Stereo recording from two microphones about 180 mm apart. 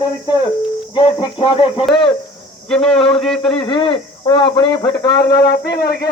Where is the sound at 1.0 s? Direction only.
25° left (ahead or behind).